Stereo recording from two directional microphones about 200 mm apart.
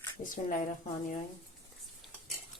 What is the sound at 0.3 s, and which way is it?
Speech, 40° left (ahead or behind).